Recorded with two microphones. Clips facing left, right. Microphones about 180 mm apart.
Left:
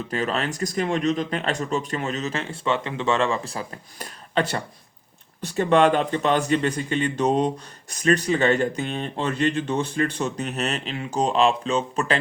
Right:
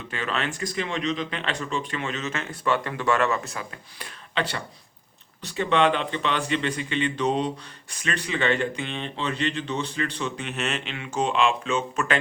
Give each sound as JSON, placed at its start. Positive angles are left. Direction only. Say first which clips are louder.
{"t": 0.1, "sound": "speech", "louder": "left 3 dB", "side_deg": 40}